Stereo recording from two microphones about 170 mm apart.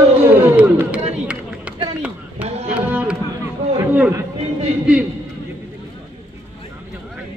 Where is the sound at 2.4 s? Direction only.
40° right (ahead or behind).